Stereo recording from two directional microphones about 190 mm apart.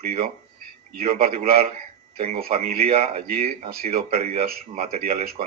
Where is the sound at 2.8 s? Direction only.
30° right (ahead or behind).